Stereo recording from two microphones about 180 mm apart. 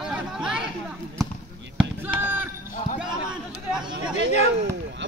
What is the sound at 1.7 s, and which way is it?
Basketball bounce, 10° right (ahead or behind).